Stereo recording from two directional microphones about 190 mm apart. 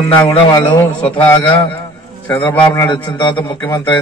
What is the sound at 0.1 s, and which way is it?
Speech, 20° left (ahead or behind).